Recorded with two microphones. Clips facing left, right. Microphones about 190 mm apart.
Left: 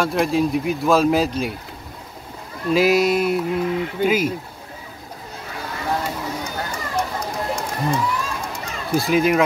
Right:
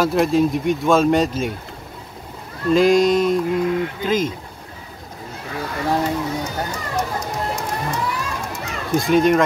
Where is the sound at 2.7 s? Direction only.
5° left (ahead or behind).